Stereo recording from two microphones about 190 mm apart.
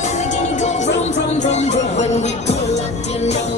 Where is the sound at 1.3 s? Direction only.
35° left (ahead or behind).